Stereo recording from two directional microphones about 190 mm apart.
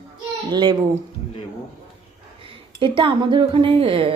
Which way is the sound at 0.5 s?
25° right (ahead or behind).